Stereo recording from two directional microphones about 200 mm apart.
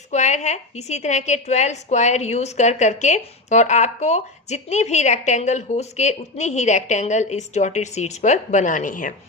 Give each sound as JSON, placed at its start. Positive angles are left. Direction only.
{"t": 0.1, "sound": "a woman's voice", "side_deg": 35}